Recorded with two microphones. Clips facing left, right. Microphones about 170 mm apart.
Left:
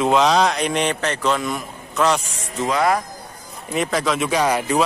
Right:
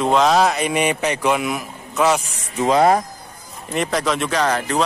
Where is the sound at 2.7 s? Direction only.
30° right (ahead or behind).